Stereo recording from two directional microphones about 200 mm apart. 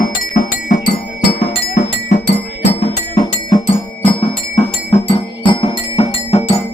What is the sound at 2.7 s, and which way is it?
Music, 30° left (ahead or behind).